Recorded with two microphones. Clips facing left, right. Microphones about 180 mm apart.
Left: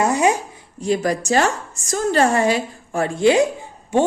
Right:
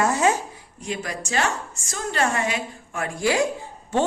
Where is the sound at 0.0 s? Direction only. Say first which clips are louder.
Left 3 dB; 15° left (ahead or behind).